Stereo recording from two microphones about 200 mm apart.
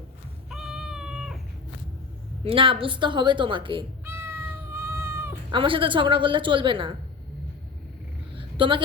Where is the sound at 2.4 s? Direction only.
25° right (ahead or behind).